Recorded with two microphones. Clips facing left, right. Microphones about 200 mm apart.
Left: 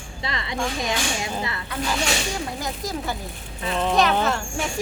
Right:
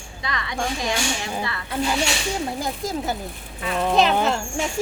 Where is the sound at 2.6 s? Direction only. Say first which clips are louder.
Right 2 dB; 25° right (ahead or behind).